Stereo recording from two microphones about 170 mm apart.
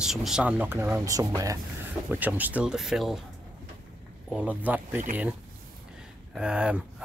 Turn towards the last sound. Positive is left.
turn(degrees=-5)  # may be behind; listen again after turning